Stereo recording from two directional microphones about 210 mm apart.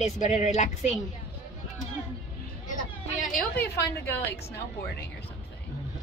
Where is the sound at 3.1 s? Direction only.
40° left (ahead or behind).